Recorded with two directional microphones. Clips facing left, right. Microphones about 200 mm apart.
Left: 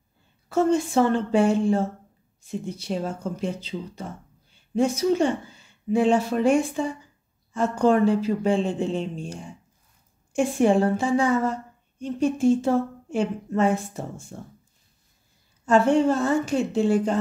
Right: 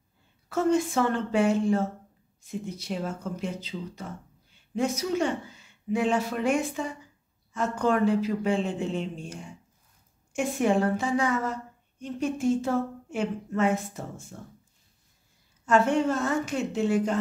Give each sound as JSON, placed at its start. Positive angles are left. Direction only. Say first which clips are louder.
{"t": 0.5, "sound": "a woman's voice", "louder": "left 3 dB", "side_deg": 30}
{"t": 15.6, "sound": "speech", "louder": "left 4 dB", "side_deg": 30}